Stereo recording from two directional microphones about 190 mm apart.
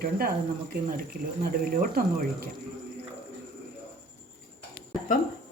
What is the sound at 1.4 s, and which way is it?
Speech, 50° right (ahead or behind).